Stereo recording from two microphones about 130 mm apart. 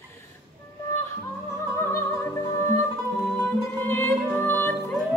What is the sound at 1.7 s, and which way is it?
Music, 20° left (ahead or behind).